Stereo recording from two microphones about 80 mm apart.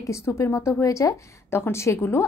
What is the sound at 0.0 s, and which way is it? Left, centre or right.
Speech, left.